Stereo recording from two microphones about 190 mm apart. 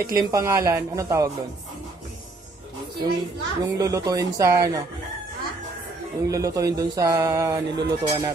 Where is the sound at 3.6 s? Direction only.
20° right (ahead or behind).